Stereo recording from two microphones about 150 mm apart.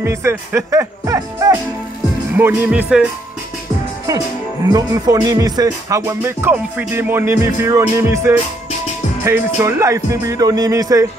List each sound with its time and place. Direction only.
0.0 s speech: 20° right (ahead or behind)
2.3 s music: 15° right (ahead or behind)
4.7 s music: 25° right (ahead or behind)
9.6 s speech: 20° right (ahead or behind)